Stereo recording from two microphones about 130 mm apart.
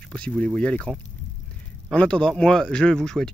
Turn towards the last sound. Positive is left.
turn(degrees=5)  # may be behind; listen again after turning